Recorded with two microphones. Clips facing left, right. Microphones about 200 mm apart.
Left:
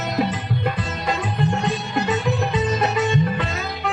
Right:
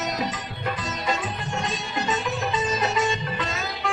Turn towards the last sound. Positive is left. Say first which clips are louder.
# left 3 dB
turn(degrees=60)  # may be behind; listen again after turning